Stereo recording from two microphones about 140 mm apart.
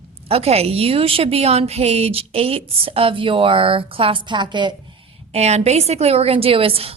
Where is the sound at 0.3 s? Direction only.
45° right (ahead or behind).